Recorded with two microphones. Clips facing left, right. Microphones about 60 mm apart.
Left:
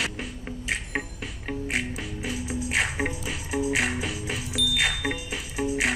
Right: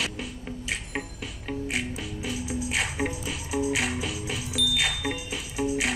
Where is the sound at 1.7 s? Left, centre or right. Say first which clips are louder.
Left 1 dB; left.